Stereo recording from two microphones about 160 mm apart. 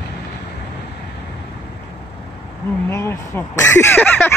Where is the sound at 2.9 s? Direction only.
15° left (ahead or behind).